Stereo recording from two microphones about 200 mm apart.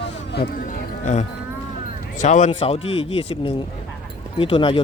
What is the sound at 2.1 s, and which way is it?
Speech, 35° left (ahead or behind).